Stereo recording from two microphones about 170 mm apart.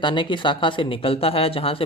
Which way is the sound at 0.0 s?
30° left (ahead or behind).